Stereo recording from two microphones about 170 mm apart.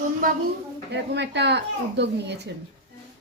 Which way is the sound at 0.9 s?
90° right.